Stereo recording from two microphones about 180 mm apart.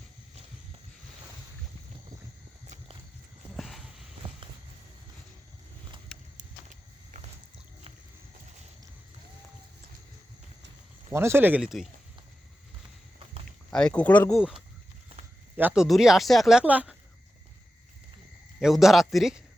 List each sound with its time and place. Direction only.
3.6 s a sound: centre (ahead or behind)
6.3 s walk: 40° right (ahead or behind)
11.1 s speech: 15° right (ahead or behind)
13.7 s speech: 5° left (ahead or behind)
14.3 s speech: 5° right (ahead or behind)
18.6 s speech: centre (ahead or behind)